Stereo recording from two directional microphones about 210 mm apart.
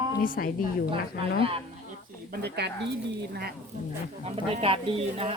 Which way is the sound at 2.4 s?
50° right (ahead or behind).